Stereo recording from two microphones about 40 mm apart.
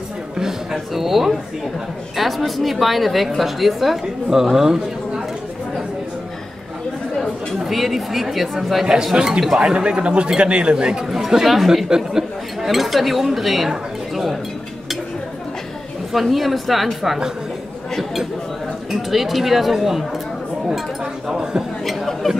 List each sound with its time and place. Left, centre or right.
0.4 s a sound: centre
2.1 s a man's voice: centre
7.5 s speech: centre
9.1 s a man's voice: right
11.1 s speech: centre
16.1 s speech: centre
18.9 s speech: centre
21.8 s chatter: centre